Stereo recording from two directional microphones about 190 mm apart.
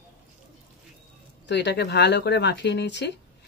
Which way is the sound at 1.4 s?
65° left (ahead or behind).